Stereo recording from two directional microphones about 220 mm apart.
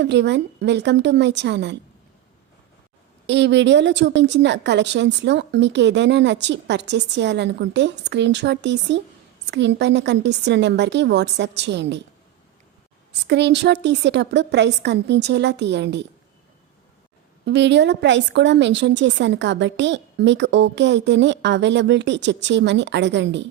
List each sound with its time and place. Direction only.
0.0 s a woman's voice: 50° right (ahead or behind)
3.2 s a woman's voice: 55° right (ahead or behind)
13.2 s a woman's voice: 50° right (ahead or behind)
17.4 s a woman's voice: 50° right (ahead or behind)